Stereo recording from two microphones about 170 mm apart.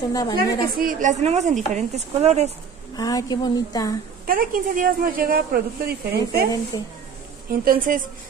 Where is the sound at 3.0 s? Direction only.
20° left (ahead or behind).